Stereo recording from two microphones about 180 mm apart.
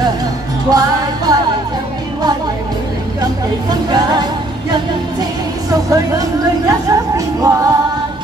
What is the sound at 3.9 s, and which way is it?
Music, 25° right (ahead or behind).